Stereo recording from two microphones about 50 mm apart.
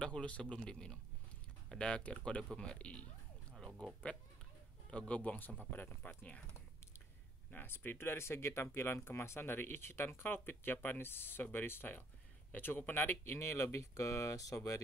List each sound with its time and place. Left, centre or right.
0.0 s speech: left
7.5 s speech: left